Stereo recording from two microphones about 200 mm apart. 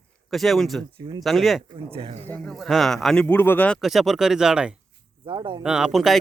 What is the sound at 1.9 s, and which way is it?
Speech, 30° right (ahead or behind).